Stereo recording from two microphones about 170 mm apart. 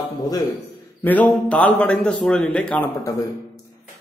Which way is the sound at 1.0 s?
10° left (ahead or behind).